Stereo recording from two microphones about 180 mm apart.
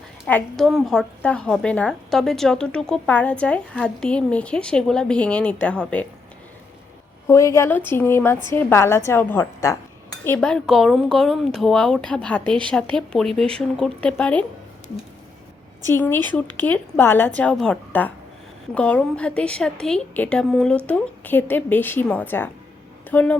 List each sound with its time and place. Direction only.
0.3 s a woman's voice: 5° left (ahead or behind)
7.3 s a woman's voice: 15° left (ahead or behind)
15.9 s a woman's voice: 10° left (ahead or behind)